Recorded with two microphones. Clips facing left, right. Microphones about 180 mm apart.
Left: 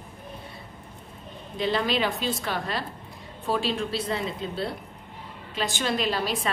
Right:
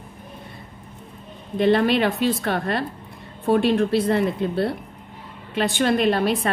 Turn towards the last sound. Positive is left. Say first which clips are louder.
# right 7 dB
turn(degrees=-60)  # may be behind; listen again after turning